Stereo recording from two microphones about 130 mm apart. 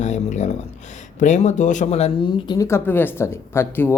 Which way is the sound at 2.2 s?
35° left (ahead or behind).